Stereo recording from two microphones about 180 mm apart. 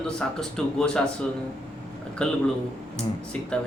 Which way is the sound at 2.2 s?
5° left (ahead or behind).